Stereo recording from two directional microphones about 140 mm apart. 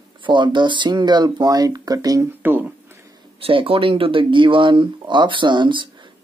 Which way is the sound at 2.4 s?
15° right (ahead or behind).